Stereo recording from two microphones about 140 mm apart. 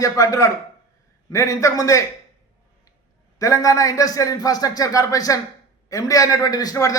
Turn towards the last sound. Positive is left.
turn(degrees=25)  # may be behind; listen again after turning